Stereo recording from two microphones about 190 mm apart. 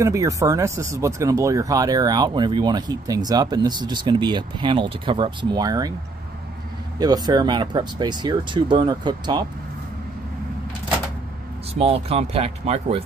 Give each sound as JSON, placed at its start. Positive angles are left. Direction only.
{"t": 0.0, "sound": "speech", "side_deg": -15}
{"t": 7.0, "sound": "speech", "side_deg": -20}
{"t": 11.7, "sound": "speech", "side_deg": -30}